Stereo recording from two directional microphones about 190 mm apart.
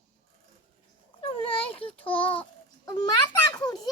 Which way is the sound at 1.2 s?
30° left (ahead or behind).